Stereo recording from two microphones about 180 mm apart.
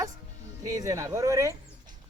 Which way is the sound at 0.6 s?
20° right (ahead or behind).